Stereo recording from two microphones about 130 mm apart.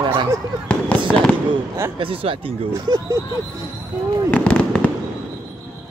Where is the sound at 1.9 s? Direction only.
45° right (ahead or behind).